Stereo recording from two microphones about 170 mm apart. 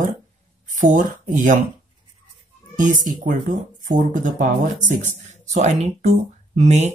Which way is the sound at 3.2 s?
50° right (ahead or behind).